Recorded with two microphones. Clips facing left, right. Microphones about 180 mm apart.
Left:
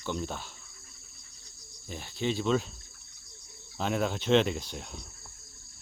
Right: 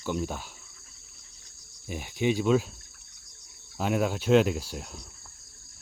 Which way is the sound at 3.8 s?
5° right (ahead or behind).